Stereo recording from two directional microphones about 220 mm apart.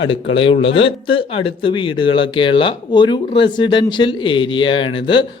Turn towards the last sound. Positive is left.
turn(degrees=20)  # may be behind; listen again after turning